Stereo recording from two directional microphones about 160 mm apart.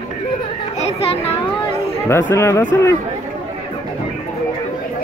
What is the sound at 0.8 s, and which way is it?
Children playing, 40° left (ahead or behind).